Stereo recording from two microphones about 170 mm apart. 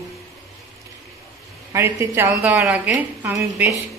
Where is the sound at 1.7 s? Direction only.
15° right (ahead or behind).